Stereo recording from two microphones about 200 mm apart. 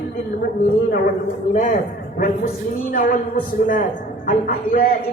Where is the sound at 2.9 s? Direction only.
45° left (ahead or behind).